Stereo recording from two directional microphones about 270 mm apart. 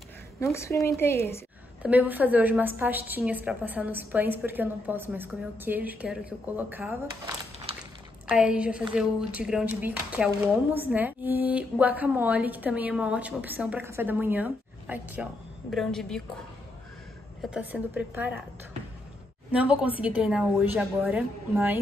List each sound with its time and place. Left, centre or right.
0.4 s a woman's voice: centre
1.8 s a woman's voice: centre
7.7 s a sound: right
8.3 s speech: centre
17.4 s speech: centre
19.5 s speech: centre